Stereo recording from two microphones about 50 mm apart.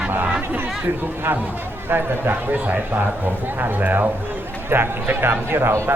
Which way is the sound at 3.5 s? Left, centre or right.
Right.